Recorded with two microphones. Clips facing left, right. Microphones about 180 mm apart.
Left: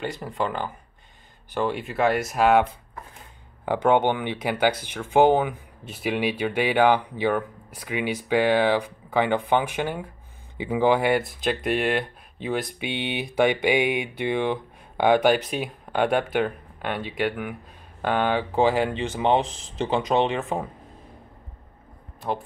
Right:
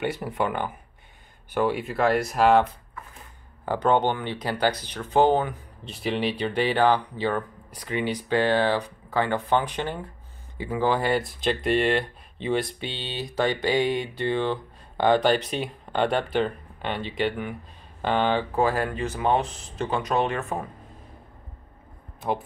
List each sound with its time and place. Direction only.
0.0 s speech: 10° right (ahead or behind)
3.6 s speech: 15° left (ahead or behind)
12.6 s speech: 15° left (ahead or behind)
18.5 s speech: 20° left (ahead or behind)
19.4 s speech: 90° left
19.8 s speech: 25° left (ahead or behind)